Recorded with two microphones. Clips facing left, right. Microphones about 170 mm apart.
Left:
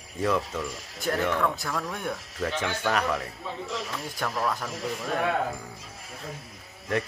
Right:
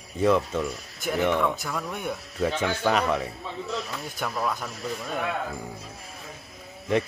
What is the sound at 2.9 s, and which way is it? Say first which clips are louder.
Speech: right 3 dB; 20° right (ahead or behind).